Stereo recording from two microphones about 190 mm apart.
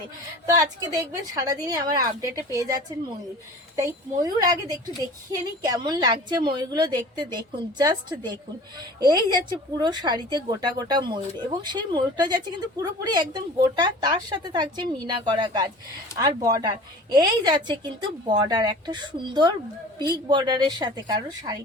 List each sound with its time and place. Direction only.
0.4 s speech: 20° right (ahead or behind)